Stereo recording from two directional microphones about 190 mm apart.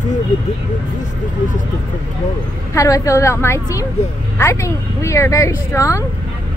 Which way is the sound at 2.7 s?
15° left (ahead or behind).